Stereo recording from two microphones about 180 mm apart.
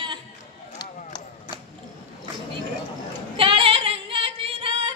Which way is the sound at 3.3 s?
30° right (ahead or behind).